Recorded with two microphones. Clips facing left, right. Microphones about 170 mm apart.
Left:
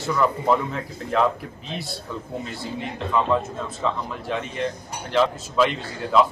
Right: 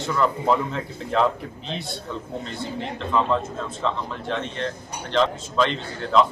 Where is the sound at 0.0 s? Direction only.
5° left (ahead or behind).